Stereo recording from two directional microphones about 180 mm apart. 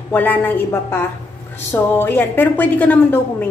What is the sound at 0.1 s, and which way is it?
A woman's voice, 10° left (ahead or behind).